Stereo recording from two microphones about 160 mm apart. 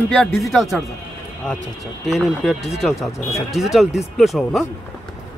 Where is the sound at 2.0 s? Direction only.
Centre (ahead or behind).